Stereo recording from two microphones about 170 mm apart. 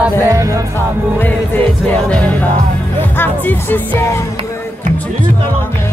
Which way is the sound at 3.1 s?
10° left (ahead or behind).